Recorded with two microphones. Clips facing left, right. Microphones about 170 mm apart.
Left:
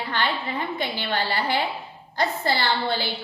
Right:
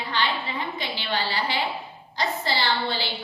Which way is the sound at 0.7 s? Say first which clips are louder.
Left 2 dB; 50° left (ahead or behind).